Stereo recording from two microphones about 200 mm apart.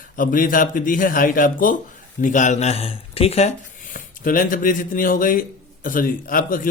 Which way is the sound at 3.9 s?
45° left (ahead or behind).